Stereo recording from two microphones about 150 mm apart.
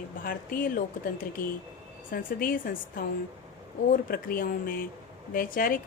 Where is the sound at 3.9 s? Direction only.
80° left.